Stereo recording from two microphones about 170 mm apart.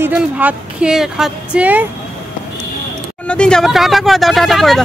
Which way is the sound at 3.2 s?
5° left (ahead or behind).